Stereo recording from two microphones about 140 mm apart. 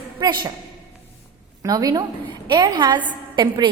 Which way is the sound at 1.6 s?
25° right (ahead or behind).